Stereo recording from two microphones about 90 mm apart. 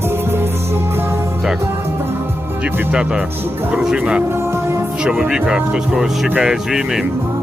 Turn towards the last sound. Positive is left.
turn(degrees=-5)  # may be behind; listen again after turning